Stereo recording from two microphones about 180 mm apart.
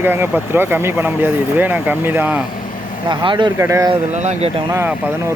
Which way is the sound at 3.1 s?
25° right (ahead or behind).